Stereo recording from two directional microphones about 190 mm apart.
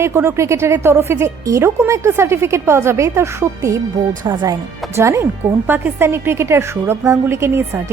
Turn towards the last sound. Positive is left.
turn(degrees=-15)  # may be behind; listen again after turning